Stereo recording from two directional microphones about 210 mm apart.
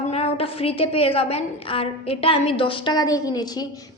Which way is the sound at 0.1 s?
30° left (ahead or behind).